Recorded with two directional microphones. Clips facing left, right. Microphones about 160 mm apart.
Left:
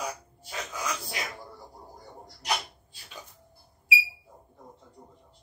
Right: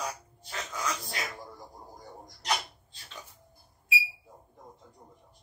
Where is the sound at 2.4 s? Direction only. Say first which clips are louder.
Even; 10° left (ahead or behind).